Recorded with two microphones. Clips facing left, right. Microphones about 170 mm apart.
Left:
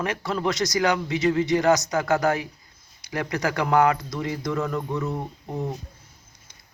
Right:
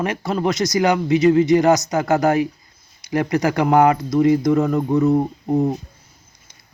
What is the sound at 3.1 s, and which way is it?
Speech, 50° right (ahead or behind).